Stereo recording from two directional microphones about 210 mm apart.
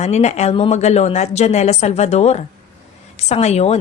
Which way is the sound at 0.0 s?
30° left (ahead or behind).